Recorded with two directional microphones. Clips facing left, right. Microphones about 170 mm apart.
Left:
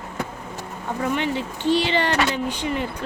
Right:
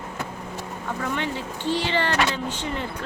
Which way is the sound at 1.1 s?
15° left (ahead or behind).